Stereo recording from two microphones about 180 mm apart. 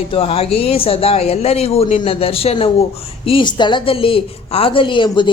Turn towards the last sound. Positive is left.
turn(degrees=25)  # may be behind; listen again after turning